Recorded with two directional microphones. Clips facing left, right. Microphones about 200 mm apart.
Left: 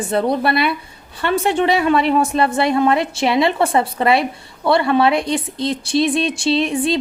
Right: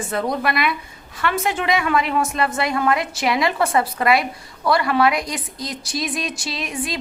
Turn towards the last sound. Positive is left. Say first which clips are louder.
# left 10 dB
turn(degrees=30)  # may be behind; listen again after turning